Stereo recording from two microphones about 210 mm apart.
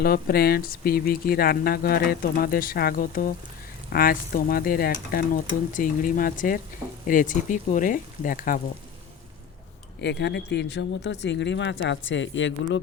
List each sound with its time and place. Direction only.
0.0 s speech: 45° left (ahead or behind)
10.0 s speech: 55° left (ahead or behind)